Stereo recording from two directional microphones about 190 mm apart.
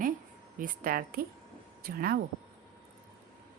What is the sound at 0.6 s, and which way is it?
A woman's voice, 50° right (ahead or behind).